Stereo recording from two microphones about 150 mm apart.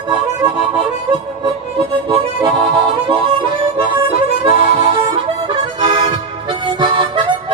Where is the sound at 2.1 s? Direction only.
30° right (ahead or behind).